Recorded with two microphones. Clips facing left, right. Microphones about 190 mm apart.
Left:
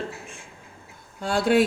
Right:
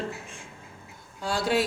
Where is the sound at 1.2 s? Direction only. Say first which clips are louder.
Left 5 dB; 55° left (ahead or behind).